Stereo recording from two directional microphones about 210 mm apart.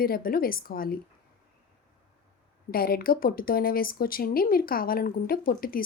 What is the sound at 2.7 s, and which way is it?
Speech, 45° left (ahead or behind).